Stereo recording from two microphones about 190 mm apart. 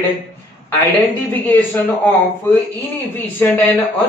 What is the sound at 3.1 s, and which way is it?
Speech, 10° left (ahead or behind).